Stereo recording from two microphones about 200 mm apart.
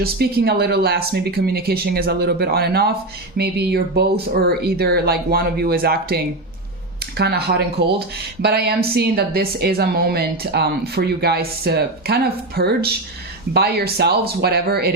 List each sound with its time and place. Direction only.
0.0 s speech: 50° right (ahead or behind)
7.2 s speech: 55° right (ahead or behind)